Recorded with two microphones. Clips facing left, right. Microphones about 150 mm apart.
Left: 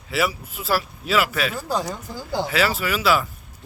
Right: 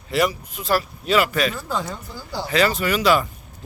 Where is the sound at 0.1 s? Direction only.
5° left (ahead or behind).